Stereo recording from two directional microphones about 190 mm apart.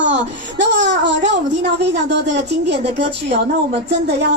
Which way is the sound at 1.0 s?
70° right (ahead or behind).